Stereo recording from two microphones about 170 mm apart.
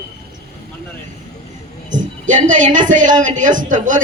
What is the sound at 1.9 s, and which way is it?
A woman's voice, 50° right (ahead or behind).